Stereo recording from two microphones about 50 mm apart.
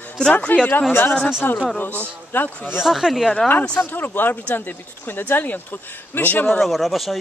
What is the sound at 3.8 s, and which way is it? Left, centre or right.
Speech, left.